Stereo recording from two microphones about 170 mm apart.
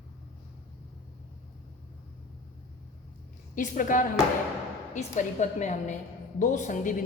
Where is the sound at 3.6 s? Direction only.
50° left (ahead or behind).